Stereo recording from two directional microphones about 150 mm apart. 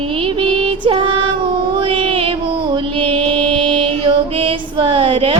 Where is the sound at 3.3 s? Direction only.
5° left (ahead or behind).